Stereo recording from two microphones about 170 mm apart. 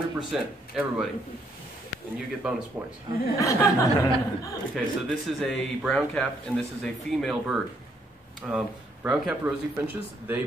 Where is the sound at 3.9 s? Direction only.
20° left (ahead or behind).